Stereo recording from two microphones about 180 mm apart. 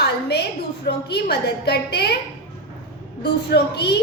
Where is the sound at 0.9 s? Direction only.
65° left (ahead or behind).